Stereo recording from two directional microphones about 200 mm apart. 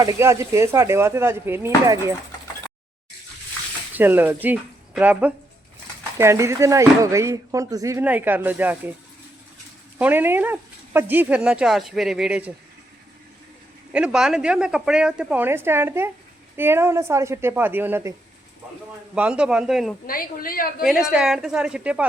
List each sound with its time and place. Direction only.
0.0 s speech: 15° right (ahead or behind)
3.9 s speech: 10° right (ahead or behind)
10.0 s speech: 10° right (ahead or behind)
13.9 s speech: 5° right (ahead or behind)
19.1 s speech: 5° right (ahead or behind)
20.1 s a woman's voice: 45° left (ahead or behind)
21.1 s speech: 5° right (ahead or behind)